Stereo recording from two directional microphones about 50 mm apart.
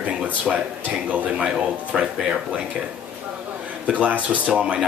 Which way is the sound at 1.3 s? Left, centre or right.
Centre.